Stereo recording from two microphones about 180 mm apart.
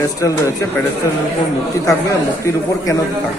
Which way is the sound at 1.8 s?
15° left (ahead or behind).